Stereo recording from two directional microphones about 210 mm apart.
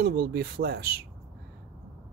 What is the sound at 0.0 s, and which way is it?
Speech, 50° right (ahead or behind).